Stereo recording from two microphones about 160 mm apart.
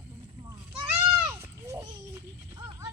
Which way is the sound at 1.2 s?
15° right (ahead or behind).